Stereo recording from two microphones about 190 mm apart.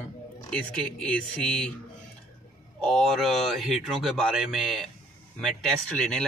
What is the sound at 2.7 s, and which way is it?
Speech, centre (ahead or behind).